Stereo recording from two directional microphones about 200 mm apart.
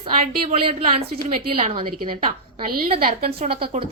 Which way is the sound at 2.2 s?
45° right (ahead or behind).